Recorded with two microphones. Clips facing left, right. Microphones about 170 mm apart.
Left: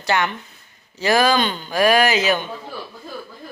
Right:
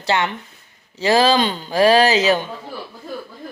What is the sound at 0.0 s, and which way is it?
Speech, 25° right (ahead or behind).